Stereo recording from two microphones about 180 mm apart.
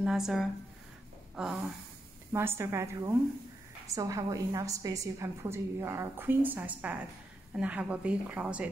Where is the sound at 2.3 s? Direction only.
15° right (ahead or behind).